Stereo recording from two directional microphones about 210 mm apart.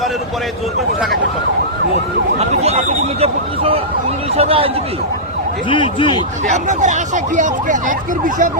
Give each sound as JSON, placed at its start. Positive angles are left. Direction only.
{"t": 2.4, "sound": "speech", "side_deg": -30}
{"t": 5.6, "sound": "speech", "side_deg": 25}
{"t": 6.5, "sound": "speech", "side_deg": -35}